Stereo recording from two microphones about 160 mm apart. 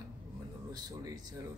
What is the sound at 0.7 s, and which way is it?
Speech, 25° right (ahead or behind).